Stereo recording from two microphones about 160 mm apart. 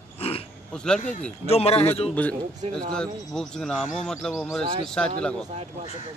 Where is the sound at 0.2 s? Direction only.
35° left (ahead or behind).